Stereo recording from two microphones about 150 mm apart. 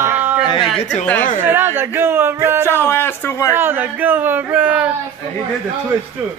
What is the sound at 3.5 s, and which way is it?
Speech, 15° right (ahead or behind).